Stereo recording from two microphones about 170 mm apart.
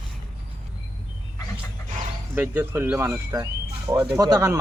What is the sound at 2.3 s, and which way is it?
A man's voice, 10° right (ahead or behind).